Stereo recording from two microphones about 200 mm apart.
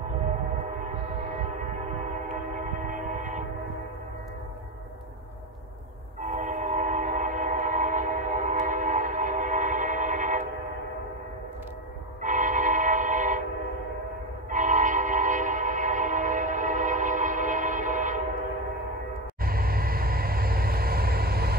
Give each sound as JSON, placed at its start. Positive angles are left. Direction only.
{"t": 2.9, "sound": "train", "side_deg": -40}
{"t": 6.2, "sound": "train", "side_deg": -40}
{"t": 12.2, "sound": "train", "side_deg": -40}
{"t": 14.5, "sound": "train", "side_deg": -40}
{"t": 19.4, "sound": "vehicle", "side_deg": -50}